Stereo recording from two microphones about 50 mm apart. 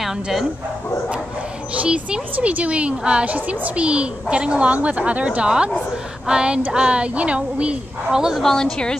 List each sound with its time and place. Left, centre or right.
0.0 s speech: centre
1.7 s a woman's voice: right
6.2 s female singing: centre
6.7 s a woman's voice: right
8.1 s female singing: centre
8.4 s a woman's voice: centre